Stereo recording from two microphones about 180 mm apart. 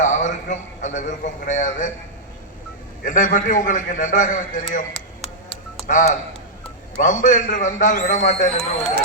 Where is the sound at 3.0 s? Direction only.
45° left (ahead or behind).